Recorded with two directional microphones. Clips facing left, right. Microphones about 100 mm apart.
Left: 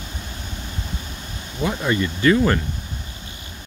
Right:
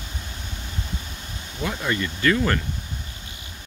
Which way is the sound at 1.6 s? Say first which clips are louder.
Left 4 dB; 20° left (ahead or behind).